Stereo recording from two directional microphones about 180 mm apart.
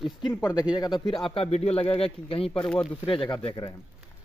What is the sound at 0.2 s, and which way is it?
Speech, 20° left (ahead or behind).